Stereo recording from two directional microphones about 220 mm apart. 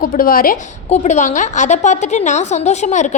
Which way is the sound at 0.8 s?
30° left (ahead or behind).